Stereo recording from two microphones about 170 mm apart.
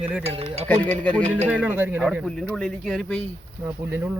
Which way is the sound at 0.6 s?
10° left (ahead or behind).